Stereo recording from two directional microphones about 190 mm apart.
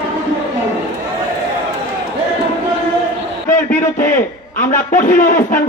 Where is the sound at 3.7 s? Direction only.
10° left (ahead or behind).